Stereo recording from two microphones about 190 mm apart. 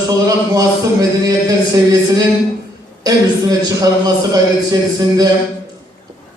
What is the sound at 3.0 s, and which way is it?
A man's voice, 20° right (ahead or behind).